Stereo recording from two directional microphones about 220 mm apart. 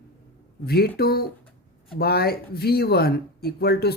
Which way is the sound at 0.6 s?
45° left (ahead or behind).